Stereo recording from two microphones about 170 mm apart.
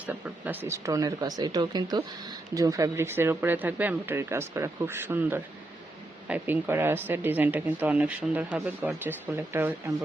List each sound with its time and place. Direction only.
0.0 s speech: 10° right (ahead or behind)